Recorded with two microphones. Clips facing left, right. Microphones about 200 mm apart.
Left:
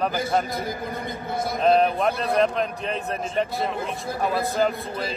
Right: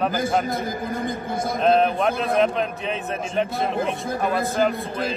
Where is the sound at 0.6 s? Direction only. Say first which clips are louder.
Right 3 dB; 50° right (ahead or behind).